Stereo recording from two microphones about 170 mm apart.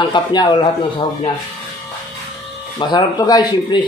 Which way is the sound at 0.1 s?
25° left (ahead or behind).